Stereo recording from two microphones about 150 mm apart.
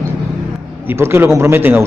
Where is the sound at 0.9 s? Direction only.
15° right (ahead or behind).